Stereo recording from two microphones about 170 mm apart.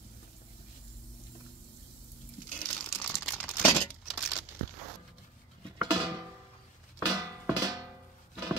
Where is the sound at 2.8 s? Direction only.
15° left (ahead or behind).